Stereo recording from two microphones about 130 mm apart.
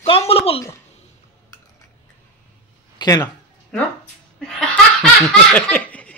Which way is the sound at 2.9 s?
30° left (ahead or behind).